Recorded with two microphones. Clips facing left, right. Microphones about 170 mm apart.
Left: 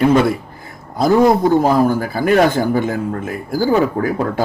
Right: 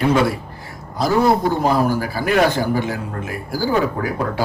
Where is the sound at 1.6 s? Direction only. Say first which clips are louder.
Left 4 dB; 50° left (ahead or behind).